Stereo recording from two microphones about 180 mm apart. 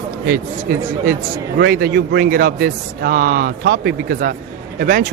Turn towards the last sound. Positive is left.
turn(degrees=-50)  # may be behind; listen again after turning